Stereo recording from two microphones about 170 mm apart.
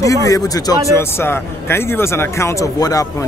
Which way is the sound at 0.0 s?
20° left (ahead or behind).